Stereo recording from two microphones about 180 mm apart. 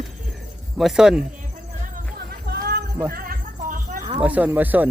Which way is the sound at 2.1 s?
60° right (ahead or behind).